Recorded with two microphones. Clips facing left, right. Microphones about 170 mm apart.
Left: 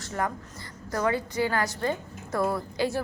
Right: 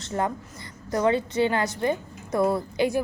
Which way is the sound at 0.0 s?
25° right (ahead or behind).